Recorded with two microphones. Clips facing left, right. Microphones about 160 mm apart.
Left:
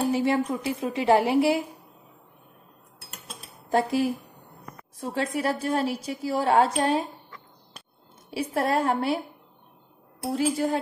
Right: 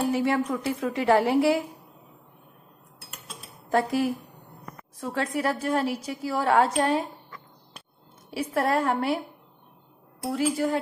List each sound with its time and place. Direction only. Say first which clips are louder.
0.0 s a woman's voice: left 1 dB; 25° left (ahead or behind)
3.7 s a woman's voice: even; 25° left (ahead or behind)
8.3 s a woman's voice: even; 25° left (ahead or behind)
10.3 s a woman's voice: even; 30° left (ahead or behind)